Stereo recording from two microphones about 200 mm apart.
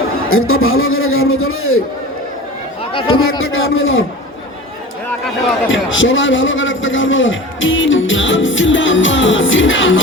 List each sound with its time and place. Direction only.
0.3 s a man's voice: 90° left
2.9 s speech: 25° left (ahead or behind)
3.2 s a man's voice: 90° left
5.6 s a man's voice: 75° left (ahead or behind)